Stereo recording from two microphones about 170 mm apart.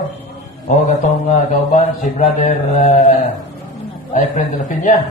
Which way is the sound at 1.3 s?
45° left (ahead or behind).